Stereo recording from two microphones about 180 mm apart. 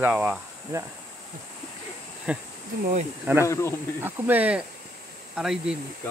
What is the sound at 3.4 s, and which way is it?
Speech, 15° left (ahead or behind).